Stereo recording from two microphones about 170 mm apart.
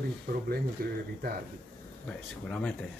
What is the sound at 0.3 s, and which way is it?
Speech, 60° right (ahead or behind).